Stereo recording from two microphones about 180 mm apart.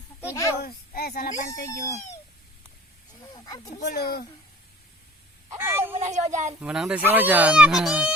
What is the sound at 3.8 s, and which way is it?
Speech, 60° left (ahead or behind).